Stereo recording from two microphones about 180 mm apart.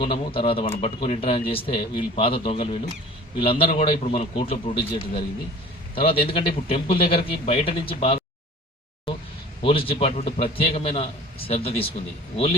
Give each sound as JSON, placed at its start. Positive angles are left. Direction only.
{"t": 0.0, "sound": "a man's voice", "side_deg": 30}
{"t": 9.6, "sound": "a man's voice", "side_deg": 30}